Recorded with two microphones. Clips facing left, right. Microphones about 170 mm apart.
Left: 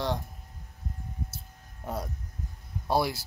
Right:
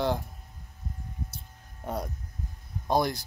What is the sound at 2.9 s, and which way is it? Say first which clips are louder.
Speech: right 1 dB; 5° left (ahead or behind).